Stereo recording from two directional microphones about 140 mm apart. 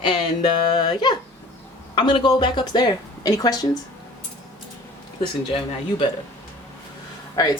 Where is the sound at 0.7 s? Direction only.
35° left (ahead or behind).